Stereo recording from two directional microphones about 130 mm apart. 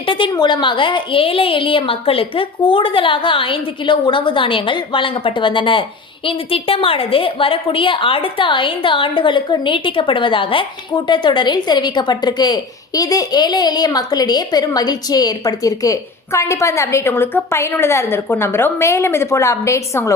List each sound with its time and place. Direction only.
0.0 s a woman's voice: 40° left (ahead or behind); by 20.1 s 20° left (ahead or behind)